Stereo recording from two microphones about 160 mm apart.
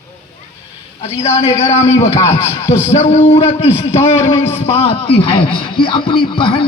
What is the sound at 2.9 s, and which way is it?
A man's voice, 40° left (ahead or behind).